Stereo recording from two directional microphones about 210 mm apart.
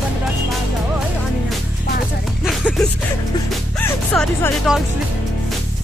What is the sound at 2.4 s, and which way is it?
Music, 5° left (ahead or behind).